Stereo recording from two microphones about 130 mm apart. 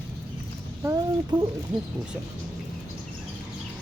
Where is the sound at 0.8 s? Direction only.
25° right (ahead or behind).